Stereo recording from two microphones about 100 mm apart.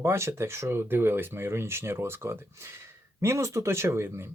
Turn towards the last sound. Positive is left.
turn(degrees=-25)  # may be behind; listen again after turning